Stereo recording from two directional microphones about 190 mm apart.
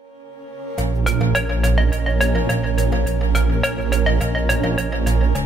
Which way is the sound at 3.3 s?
Centre (ahead or behind).